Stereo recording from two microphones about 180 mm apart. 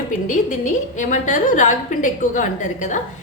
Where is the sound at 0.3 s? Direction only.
40° left (ahead or behind).